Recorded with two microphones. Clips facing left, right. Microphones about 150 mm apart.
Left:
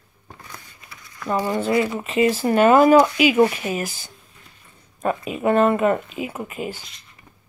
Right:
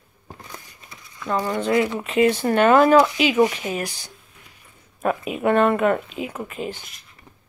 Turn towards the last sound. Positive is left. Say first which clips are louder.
# even
turn(degrees=5)  # may be behind; listen again after turning